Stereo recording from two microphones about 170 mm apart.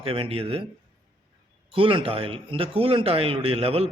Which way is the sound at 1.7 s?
30° right (ahead or behind).